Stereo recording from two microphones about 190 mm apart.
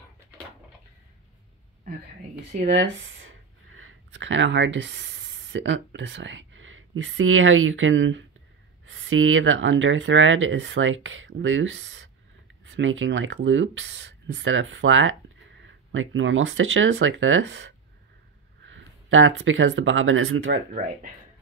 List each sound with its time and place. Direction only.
2.7 s speech: 85° right; by 17.7 s 70° right (ahead or behind)
18.7 s speech: 90° right